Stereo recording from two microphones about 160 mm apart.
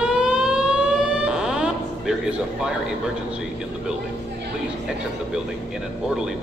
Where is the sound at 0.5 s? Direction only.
5° right (ahead or behind).